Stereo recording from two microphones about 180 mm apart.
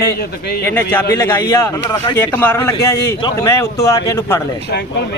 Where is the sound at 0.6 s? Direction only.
10° left (ahead or behind).